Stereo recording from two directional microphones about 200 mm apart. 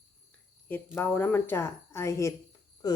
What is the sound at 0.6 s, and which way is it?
Speech, 10° left (ahead or behind).